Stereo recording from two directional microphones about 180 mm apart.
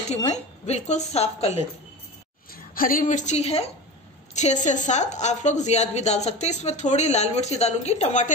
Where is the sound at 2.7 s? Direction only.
50° left (ahead or behind).